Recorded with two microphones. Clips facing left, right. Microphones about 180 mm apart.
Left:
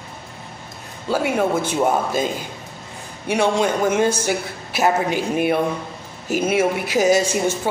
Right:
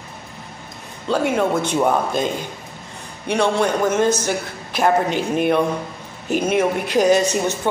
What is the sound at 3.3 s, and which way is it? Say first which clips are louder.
A woman's voice: even; 10° left (ahead or behind).